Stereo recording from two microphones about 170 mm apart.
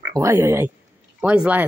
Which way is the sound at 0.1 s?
15° right (ahead or behind).